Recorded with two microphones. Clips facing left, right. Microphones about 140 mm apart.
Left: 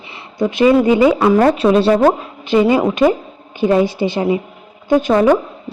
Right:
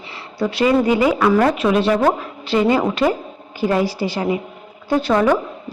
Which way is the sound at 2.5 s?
20° left (ahead or behind).